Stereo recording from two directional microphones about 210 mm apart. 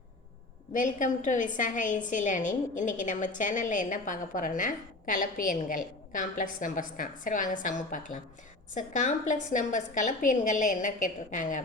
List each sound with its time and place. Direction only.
0.7 s a woman's voice: 40° left (ahead or behind)